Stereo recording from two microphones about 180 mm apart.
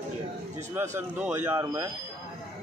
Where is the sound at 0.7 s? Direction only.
15° right (ahead or behind).